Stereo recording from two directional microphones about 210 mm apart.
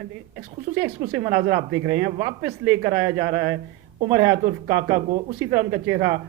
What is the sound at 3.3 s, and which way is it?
A woman's voice, 55° right (ahead or behind).